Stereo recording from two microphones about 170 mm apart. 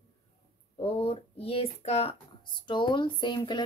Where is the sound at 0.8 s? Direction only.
35° left (ahead or behind).